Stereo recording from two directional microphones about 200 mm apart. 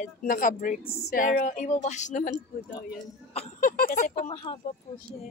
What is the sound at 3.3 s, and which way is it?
A woman's voice, 45° left (ahead or behind).